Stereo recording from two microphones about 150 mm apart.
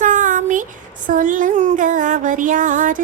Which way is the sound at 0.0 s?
60° right (ahead or behind).